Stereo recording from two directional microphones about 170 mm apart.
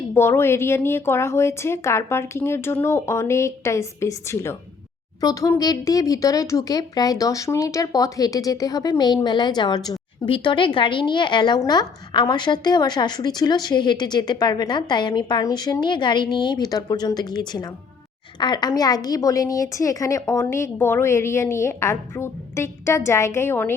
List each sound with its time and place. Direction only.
0.1 s a woman's voice: 15° left (ahead or behind)